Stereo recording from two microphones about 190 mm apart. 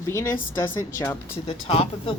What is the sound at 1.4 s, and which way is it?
Speech, 30° left (ahead or behind).